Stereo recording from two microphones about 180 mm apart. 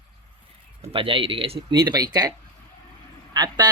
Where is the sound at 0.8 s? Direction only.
30° right (ahead or behind).